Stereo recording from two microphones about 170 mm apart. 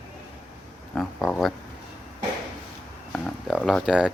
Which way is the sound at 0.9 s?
Centre (ahead or behind).